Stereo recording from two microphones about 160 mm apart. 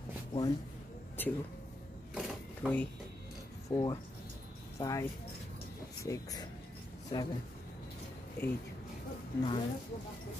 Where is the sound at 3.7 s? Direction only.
25° left (ahead or behind).